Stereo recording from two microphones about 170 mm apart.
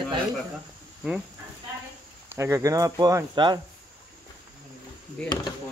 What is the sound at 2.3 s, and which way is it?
Speech, 15° right (ahead or behind).